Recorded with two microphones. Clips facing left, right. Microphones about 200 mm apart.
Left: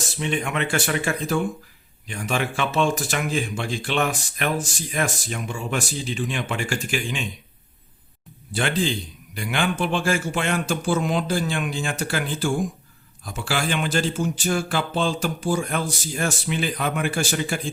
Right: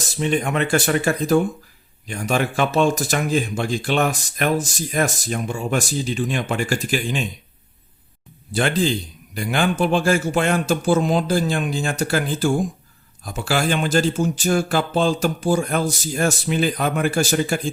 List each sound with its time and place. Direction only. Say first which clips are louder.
0.2 s speech: right 5 dB; 40° right (ahead or behind)
8.5 s speech: right 4 dB; 40° right (ahead or behind)